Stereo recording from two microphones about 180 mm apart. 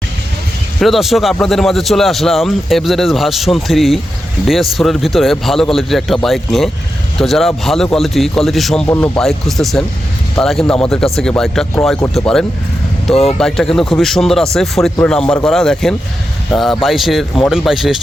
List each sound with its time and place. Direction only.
0.8 s a man's voice: centre (ahead or behind)
8.9 s speech: 15° left (ahead or behind)
9.1 s a man's voice: centre (ahead or behind)